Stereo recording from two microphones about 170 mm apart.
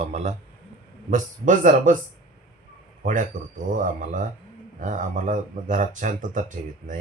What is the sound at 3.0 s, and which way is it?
A man's voice, 50° right (ahead or behind).